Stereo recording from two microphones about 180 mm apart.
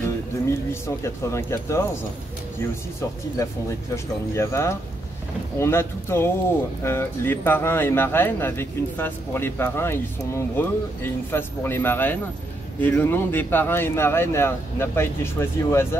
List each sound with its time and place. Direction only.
0.8 s speech: 15° left (ahead or behind)
3.9 s speech: 15° left (ahead or behind)